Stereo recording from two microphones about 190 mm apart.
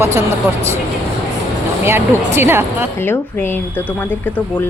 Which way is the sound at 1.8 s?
15° right (ahead or behind).